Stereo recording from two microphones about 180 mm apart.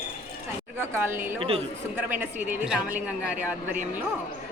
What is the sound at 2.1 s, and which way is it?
A woman's voice, 10° right (ahead or behind).